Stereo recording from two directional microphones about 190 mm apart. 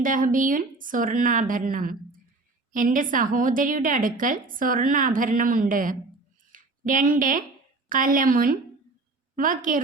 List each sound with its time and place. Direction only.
0.0 s a woman's voice: 45° right (ahead or behind)
6.5 s a sound: 45° right (ahead or behind)
7.9 s a woman's voice: 45° right (ahead or behind)